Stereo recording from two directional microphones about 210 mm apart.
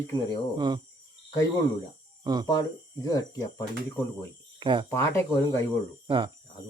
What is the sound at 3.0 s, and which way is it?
Speech, 15° left (ahead or behind).